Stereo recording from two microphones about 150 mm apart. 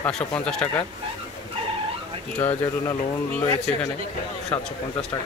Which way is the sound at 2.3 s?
10° left (ahead or behind).